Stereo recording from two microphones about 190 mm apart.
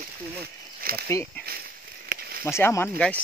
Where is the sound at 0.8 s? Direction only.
50° right (ahead or behind).